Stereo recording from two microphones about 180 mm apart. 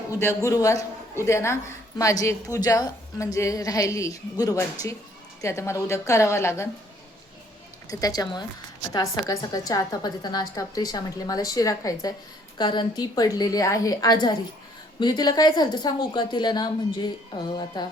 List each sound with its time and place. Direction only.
0.1 s a woman's voice: 15° left (ahead or behind)
7.9 s a woman's voice: 20° left (ahead or behind)